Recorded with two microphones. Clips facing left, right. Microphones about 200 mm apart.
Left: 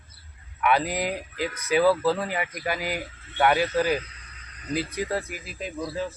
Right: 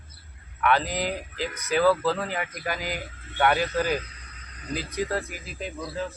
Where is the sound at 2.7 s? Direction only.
40° right (ahead or behind).